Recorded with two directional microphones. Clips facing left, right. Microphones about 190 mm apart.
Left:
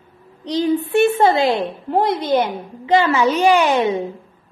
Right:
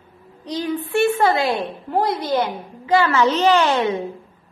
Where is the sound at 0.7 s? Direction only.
20° left (ahead or behind).